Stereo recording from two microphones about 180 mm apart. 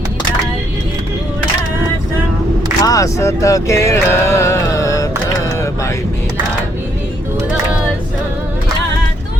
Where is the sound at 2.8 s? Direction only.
20° left (ahead or behind).